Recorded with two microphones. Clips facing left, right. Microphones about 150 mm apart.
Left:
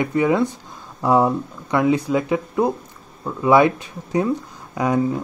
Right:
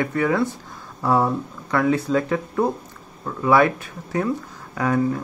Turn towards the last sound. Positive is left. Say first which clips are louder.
# left 1 dB
turn(degrees=15)  # may be behind; listen again after turning